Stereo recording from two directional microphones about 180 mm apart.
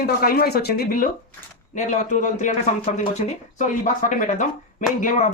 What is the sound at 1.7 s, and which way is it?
Speech, 40° left (ahead or behind).